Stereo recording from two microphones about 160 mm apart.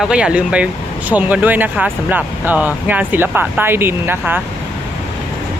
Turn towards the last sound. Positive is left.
turn(degrees=-15)  # may be behind; listen again after turning